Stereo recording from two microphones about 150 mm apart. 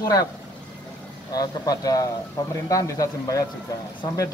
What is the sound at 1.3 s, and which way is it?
Speech, 25° left (ahead or behind).